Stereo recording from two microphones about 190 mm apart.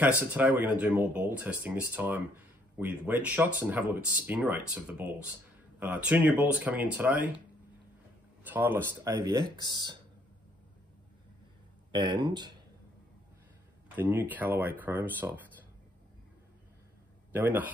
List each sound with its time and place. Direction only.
0.0 s speech: 10° right (ahead or behind)
8.5 s speech: 10° right (ahead or behind)
9.1 s speech: 20° right (ahead or behind)
11.9 s speech: 25° right (ahead or behind)
13.9 s speech: 10° right (ahead or behind)
17.3 s speech: 10° right (ahead or behind)